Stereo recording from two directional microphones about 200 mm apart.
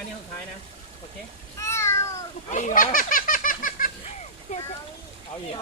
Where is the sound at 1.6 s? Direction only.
15° left (ahead or behind).